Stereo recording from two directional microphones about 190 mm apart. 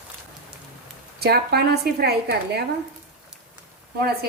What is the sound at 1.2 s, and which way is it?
A woman's voice, 60° right (ahead or behind).